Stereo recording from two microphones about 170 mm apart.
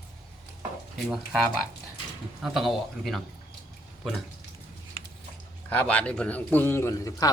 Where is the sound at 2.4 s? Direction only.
Centre (ahead or behind).